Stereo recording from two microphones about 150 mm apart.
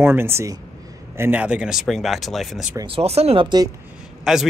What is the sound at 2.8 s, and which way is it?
Speech, 40° right (ahead or behind).